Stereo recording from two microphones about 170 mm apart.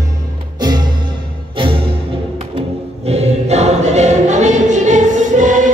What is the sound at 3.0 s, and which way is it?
Choir, 40° right (ahead or behind).